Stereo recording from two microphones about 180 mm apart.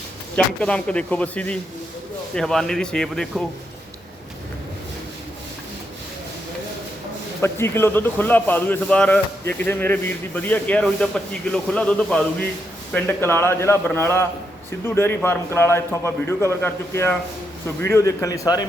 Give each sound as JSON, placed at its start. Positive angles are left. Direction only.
{"t": 0.3, "sound": "a man's voice", "side_deg": 5}
{"t": 7.4, "sound": "a man's voice", "side_deg": 15}